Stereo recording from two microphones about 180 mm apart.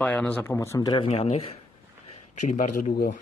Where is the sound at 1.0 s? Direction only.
35° left (ahead or behind).